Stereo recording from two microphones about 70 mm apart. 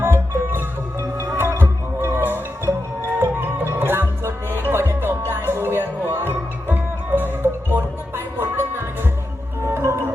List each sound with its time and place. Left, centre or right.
0.0 s music: right